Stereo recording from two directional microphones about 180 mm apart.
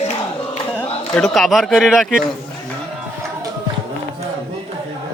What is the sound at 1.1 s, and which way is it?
Speech, centre (ahead or behind).